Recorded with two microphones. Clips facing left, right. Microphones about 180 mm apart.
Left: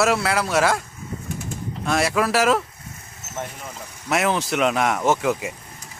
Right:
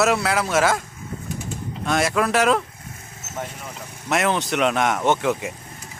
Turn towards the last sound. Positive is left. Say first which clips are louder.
# even
turn(degrees=0)  # may be behind; listen again after turning